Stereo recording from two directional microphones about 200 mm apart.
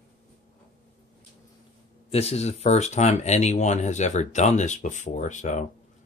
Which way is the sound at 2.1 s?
30° left (ahead or behind).